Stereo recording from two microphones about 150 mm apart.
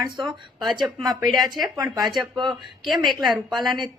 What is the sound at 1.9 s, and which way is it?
Speech, 25° right (ahead or behind).